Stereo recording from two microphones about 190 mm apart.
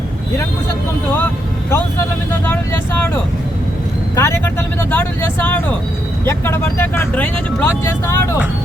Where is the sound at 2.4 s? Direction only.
10° left (ahead or behind).